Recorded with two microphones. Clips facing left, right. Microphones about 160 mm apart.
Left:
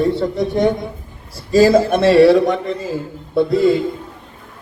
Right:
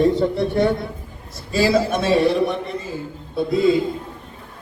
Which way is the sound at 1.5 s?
45° left (ahead or behind).